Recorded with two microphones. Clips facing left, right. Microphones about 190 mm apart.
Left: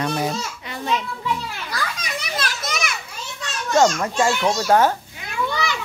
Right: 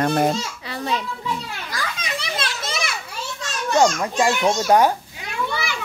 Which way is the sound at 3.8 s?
15° right (ahead or behind).